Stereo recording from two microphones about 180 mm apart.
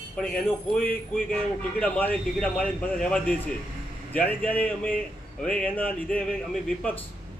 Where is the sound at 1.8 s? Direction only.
10° left (ahead or behind).